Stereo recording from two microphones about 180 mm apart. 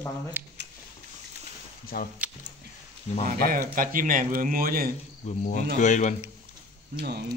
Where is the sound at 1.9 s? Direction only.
60° left (ahead or behind).